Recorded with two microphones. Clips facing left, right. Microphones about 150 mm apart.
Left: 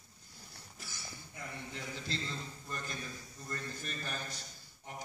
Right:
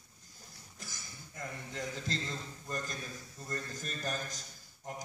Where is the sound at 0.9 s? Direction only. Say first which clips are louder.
Left 1 dB; 45° right (ahead or behind).